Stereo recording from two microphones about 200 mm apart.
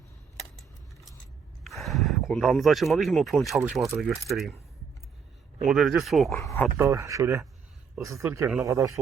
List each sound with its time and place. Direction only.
1.6 s speech: centre (ahead or behind)
5.6 s speech: centre (ahead or behind)
6.4 s speech: 15° left (ahead or behind)
6.7 s speech: 15° right (ahead or behind)